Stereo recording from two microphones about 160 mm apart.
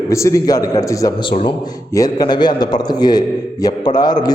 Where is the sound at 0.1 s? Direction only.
20° left (ahead or behind).